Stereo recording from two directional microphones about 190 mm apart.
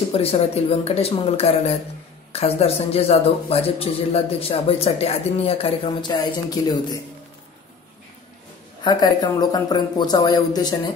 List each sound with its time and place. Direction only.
0.1 s a man's voice: 30° left (ahead or behind)
8.8 s speech: 20° left (ahead or behind)